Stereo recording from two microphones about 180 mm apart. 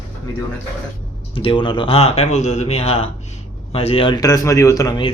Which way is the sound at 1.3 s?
30° left (ahead or behind).